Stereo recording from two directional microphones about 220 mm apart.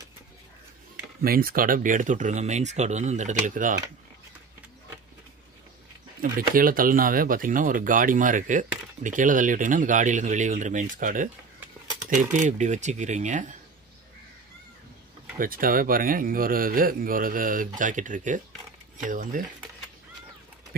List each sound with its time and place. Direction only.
1.2 s speech: 40° right (ahead or behind)
6.3 s speech: 40° right (ahead or behind)
15.3 s speech: 40° right (ahead or behind)